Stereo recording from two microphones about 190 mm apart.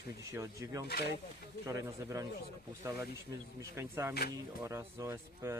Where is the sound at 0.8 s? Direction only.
60° left (ahead or behind).